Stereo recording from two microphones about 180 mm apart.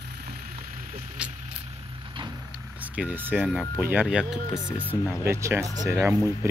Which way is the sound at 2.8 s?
10° right (ahead or behind).